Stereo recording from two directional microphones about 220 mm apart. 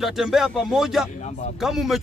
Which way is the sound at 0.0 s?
Centre (ahead or behind).